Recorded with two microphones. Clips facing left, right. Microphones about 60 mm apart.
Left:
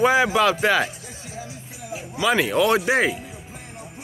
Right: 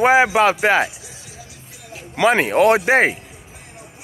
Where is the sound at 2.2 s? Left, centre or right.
Right.